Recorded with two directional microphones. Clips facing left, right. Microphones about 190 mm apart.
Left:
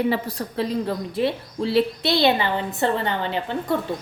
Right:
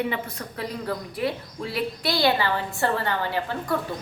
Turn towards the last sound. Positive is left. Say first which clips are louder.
# left 3 dB
turn(degrees=20)  # may be behind; listen again after turning